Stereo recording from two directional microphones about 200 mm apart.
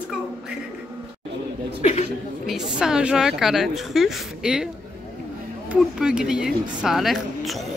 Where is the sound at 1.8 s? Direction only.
35° left (ahead or behind).